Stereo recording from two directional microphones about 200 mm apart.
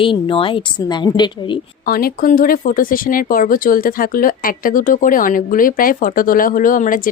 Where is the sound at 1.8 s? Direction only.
50° left (ahead or behind).